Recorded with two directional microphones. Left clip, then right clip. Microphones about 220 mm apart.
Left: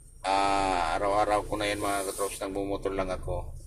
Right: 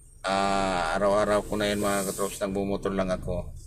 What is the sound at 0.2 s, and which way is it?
Speech, 15° right (ahead or behind).